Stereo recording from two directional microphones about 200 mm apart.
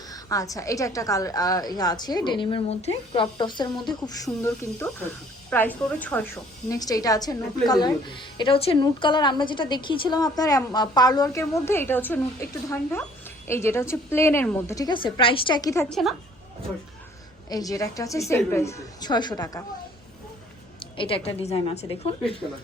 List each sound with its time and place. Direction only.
0.1 s a woman's voice: 15° left (ahead or behind)
15.9 s a woman's voice: centre (ahead or behind)
17.5 s a woman's voice: 15° left (ahead or behind)
20.7 s a woman's voice: 25° left (ahead or behind)